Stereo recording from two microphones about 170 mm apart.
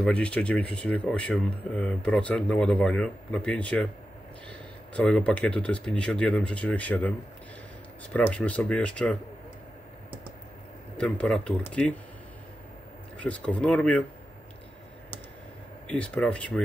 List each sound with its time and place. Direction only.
0.0 s speech: 5° left (ahead or behind)
11.0 s speech: 5° left (ahead or behind)
13.2 s speech: 10° left (ahead or behind)
15.9 s speech: 5° left (ahead or behind)